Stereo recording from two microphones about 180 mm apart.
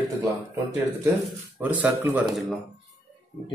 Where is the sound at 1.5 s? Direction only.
10° right (ahead or behind).